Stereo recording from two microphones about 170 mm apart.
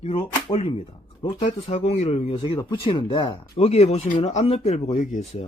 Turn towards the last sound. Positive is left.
turn(degrees=45)  # may be behind; listen again after turning